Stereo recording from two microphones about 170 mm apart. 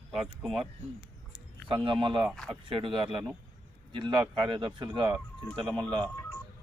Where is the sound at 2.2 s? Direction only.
5° left (ahead or behind).